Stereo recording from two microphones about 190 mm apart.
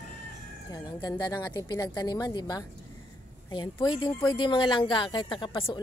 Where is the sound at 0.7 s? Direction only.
20° left (ahead or behind).